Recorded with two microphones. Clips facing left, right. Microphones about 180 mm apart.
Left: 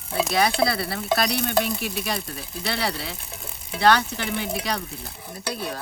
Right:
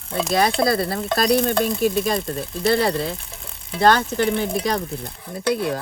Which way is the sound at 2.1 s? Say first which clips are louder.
Right 7 dB; 50° right (ahead or behind).